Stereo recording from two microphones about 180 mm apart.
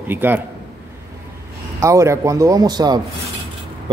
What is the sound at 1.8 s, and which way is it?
A man's voice, 15° right (ahead or behind).